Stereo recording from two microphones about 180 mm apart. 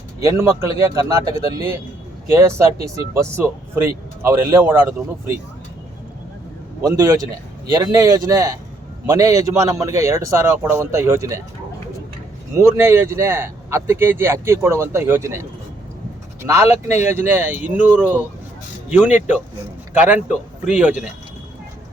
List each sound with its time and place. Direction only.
0.2 s speech: 15° right (ahead or behind)
6.8 s a man's voice: 20° right (ahead or behind)
12.5 s speech: 15° right (ahead or behind)
16.4 s speech: 15° right (ahead or behind)